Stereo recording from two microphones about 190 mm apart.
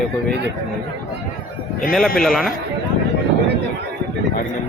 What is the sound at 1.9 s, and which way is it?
Speech, centre (ahead or behind).